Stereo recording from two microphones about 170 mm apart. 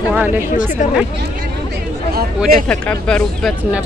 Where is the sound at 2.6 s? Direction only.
5° left (ahead or behind).